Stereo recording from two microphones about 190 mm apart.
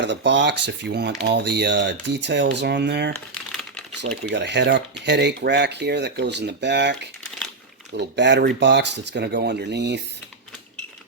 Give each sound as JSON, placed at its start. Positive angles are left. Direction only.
{"t": 0.0, "sound": "speech", "side_deg": -70}
{"t": 3.5, "sound": "typing", "side_deg": 0}
{"t": 4.2, "sound": "speech", "side_deg": -65}